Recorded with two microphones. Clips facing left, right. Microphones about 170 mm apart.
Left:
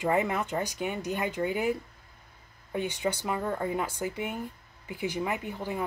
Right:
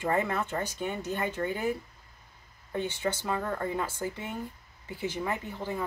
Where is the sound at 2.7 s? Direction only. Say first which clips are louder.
Left 1 dB; 15° left (ahead or behind).